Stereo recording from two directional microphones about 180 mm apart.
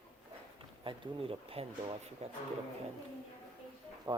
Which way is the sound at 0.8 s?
30° right (ahead or behind).